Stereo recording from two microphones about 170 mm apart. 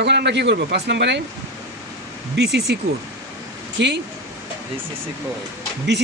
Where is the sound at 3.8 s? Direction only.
90° right.